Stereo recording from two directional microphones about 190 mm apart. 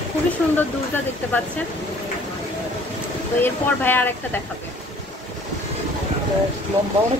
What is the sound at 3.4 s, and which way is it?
Speech, 10° left (ahead or behind).